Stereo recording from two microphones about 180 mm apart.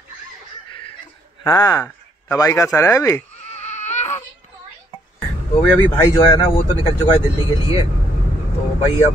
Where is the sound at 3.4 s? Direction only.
35° left (ahead or behind).